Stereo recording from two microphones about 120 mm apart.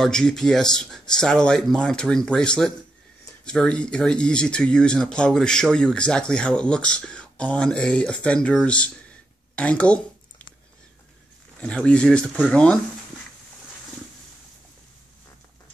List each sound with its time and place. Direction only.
0.0 s speech: 5° left (ahead or behind)
9.6 s a sound: 10° left (ahead or behind)
11.6 s speech: 10° left (ahead or behind)